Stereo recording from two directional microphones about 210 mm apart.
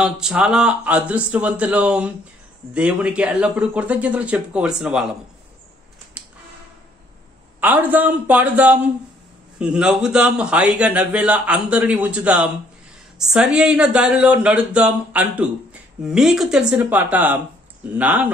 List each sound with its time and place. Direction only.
0.0 s speech: 5° right (ahead or behind)
6.2 s tick-tock: 5° right (ahead or behind)
7.6 s speech: 10° right (ahead or behind)